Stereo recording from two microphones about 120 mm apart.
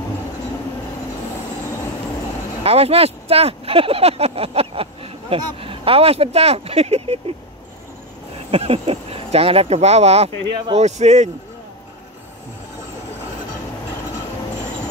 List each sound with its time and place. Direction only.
2.6 s speech: 55° right (ahead or behind)
8.5 s speech: 55° right (ahead or behind); by 11.2 s 70° right (ahead or behind)